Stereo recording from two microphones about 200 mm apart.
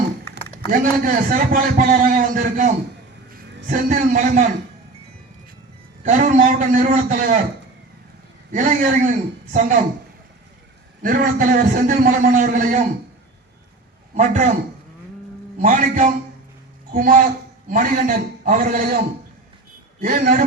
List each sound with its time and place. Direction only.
0.7 s a man's voice: 40° right (ahead or behind)
6.1 s a man's voice: 40° right (ahead or behind)
8.5 s a man's voice: 45° right (ahead or behind)
11.0 s a man's voice: 45° right (ahead or behind)
14.2 s a man's voice: 35° right (ahead or behind)
15.6 s a man's voice: 40° right (ahead or behind)